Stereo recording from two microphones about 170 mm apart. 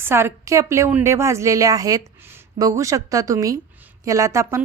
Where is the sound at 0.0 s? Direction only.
15° right (ahead or behind).